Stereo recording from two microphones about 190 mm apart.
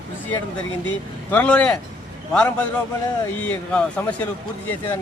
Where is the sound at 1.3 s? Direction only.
10° left (ahead or behind).